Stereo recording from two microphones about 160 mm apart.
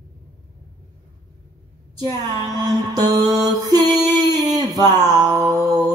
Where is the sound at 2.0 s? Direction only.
25° right (ahead or behind).